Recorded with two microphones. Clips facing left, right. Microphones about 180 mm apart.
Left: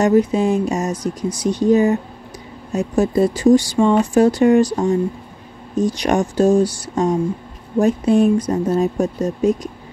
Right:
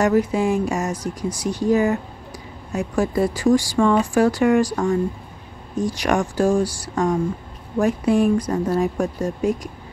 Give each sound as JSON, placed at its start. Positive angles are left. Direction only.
{"t": 0.0, "sound": "speech", "side_deg": 20}